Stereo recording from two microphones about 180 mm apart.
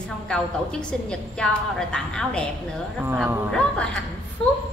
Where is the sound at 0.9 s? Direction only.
5° left (ahead or behind).